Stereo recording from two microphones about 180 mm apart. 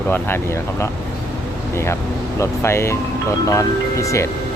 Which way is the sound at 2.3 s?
15° left (ahead or behind).